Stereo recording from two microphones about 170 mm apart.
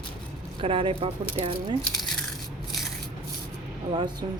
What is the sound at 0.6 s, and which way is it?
Speech, 30° right (ahead or behind).